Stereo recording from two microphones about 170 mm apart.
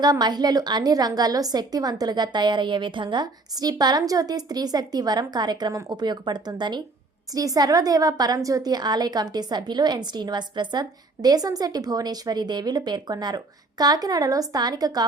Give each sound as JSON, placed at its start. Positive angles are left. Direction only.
{"t": 0.0, "sound": "a woman's voice", "side_deg": -25}